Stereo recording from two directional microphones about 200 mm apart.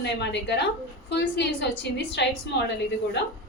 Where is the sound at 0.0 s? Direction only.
60° left (ahead or behind).